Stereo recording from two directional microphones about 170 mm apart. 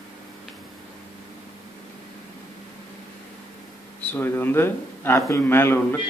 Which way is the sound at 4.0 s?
10° left (ahead or behind).